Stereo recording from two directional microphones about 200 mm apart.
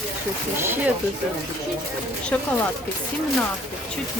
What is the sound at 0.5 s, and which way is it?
Speech, 10° right (ahead or behind).